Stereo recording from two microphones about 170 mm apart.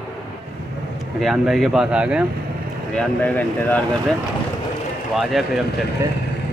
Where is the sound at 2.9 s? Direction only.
5° left (ahead or behind).